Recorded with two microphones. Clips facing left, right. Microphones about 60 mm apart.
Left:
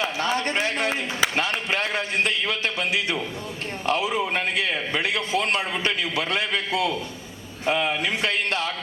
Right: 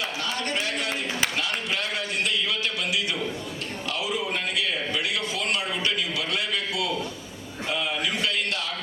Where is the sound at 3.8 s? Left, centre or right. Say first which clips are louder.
Left 6 dB; left.